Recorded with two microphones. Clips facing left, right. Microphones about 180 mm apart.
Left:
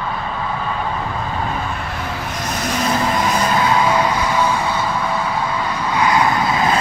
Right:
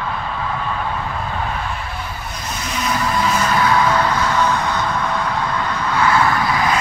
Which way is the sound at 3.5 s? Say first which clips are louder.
Even; 20° left (ahead or behind).